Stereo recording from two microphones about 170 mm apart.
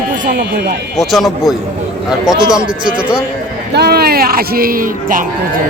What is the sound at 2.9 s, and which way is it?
Speech, 5° right (ahead or behind).